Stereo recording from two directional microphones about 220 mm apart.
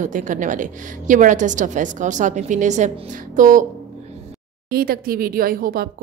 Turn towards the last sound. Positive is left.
turn(degrees=-40)  # may be behind; listen again after turning